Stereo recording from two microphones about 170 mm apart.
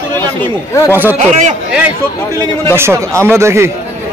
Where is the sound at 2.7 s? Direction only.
15° right (ahead or behind).